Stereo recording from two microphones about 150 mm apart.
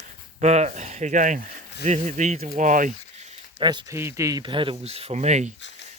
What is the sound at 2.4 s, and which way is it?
Speech, 70° right (ahead or behind).